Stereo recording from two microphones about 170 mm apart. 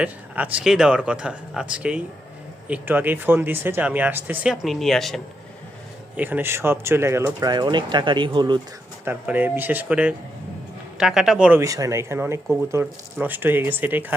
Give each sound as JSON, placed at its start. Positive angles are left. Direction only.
{"t": 0.0, "sound": "speech", "side_deg": -10}
{"t": 6.1, "sound": "speech", "side_deg": -10}
{"t": 9.0, "sound": "speech", "side_deg": -10}
{"t": 11.6, "sound": "speech", "side_deg": -20}